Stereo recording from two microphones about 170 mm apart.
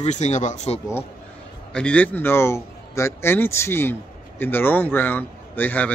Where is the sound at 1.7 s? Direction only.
5° left (ahead or behind).